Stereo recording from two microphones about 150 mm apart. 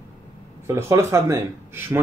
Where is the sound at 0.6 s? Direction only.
20° right (ahead or behind).